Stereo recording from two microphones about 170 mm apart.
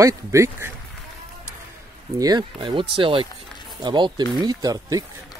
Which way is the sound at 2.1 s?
25° right (ahead or behind).